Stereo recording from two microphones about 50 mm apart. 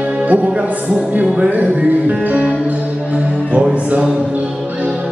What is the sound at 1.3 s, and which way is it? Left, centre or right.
Speech, right.